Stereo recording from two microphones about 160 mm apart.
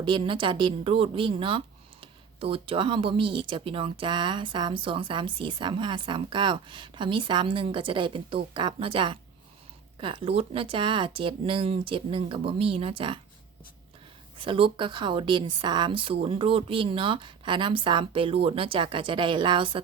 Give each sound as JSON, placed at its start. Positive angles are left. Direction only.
{"t": 0.0, "sound": "speech", "side_deg": -30}
{"t": 14.3, "sound": "speech", "side_deg": -35}